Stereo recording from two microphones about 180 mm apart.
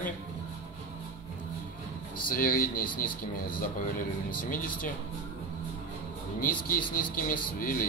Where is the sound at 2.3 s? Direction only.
50° left (ahead or behind).